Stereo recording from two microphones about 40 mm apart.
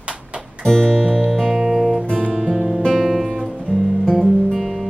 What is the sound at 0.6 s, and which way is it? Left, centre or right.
Music, centre.